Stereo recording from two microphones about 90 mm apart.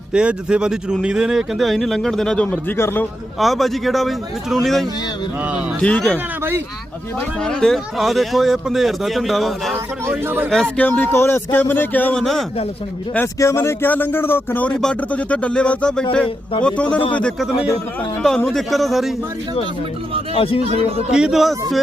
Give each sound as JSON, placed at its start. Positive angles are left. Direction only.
{"t": 0.1, "sound": "speech", "side_deg": -10}
{"t": 2.7, "sound": "speech", "side_deg": 25}
{"t": 3.4, "sound": "speech", "side_deg": 0}
{"t": 5.8, "sound": "speech", "side_deg": 15}
{"t": 7.4, "sound": "speech", "side_deg": 5}
{"t": 10.1, "sound": "a man's voice", "side_deg": -20}
{"t": 10.8, "sound": "speech", "side_deg": 15}
{"t": 12.1, "sound": "speech", "side_deg": 0}
{"t": 13.4, "sound": "speech", "side_deg": 30}
{"t": 14.7, "sound": "speech", "side_deg": 10}
{"t": 18.2, "sound": "speech", "side_deg": 5}
{"t": 20.3, "sound": "a man's voice", "side_deg": 90}
{"t": 21.1, "sound": "speech", "side_deg": -10}